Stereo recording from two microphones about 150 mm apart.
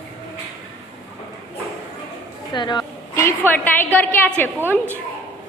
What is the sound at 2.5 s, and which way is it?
Speech, 30° left (ahead or behind).